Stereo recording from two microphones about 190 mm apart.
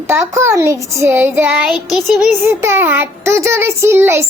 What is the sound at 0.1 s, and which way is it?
A child's voice, 15° right (ahead or behind).